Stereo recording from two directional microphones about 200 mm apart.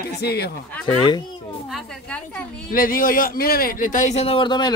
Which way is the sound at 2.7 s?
45° left (ahead or behind).